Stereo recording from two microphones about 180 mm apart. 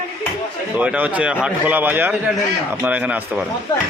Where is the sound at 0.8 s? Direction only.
10° right (ahead or behind).